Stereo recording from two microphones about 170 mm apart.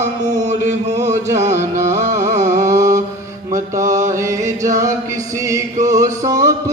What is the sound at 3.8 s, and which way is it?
Chant, 45° right (ahead or behind).